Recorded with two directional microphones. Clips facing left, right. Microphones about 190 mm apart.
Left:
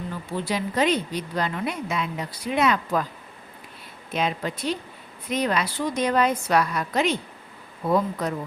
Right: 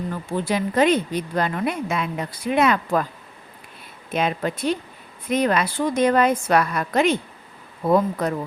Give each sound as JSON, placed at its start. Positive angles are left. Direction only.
{"t": 0.3, "sound": "a woman's voice", "side_deg": -50}
{"t": 4.1, "sound": "a woman's voice", "side_deg": -55}